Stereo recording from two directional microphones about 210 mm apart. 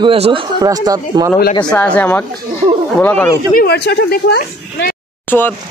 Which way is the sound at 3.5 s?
50° left (ahead or behind).